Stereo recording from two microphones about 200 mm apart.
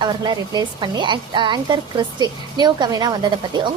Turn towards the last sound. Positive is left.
turn(degrees=-20)  # may be behind; listen again after turning